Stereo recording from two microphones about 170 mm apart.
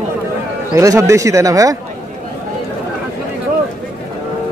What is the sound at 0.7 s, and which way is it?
Speech, 15° right (ahead or behind).